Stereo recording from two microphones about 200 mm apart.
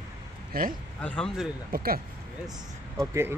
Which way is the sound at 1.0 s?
5° left (ahead or behind).